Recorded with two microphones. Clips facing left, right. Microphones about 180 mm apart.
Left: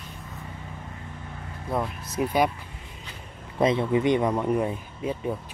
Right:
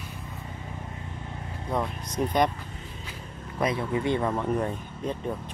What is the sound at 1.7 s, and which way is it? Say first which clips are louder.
Speech: left 1 dB; 5° left (ahead or behind).